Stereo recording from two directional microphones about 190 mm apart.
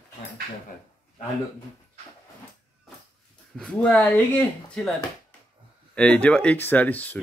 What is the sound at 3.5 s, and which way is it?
Speech, 5° left (ahead or behind).